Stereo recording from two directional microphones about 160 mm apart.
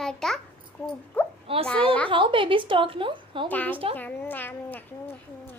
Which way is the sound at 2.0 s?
35° right (ahead or behind).